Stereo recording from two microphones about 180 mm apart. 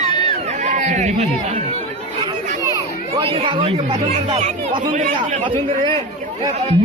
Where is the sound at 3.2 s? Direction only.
30° right (ahead or behind).